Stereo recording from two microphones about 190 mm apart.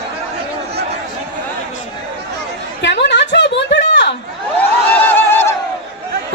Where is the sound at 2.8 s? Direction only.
65° left (ahead or behind).